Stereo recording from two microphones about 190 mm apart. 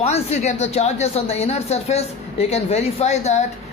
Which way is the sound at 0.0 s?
35° left (ahead or behind).